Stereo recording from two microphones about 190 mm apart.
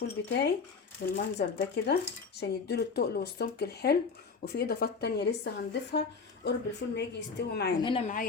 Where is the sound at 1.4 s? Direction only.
55° left (ahead or behind).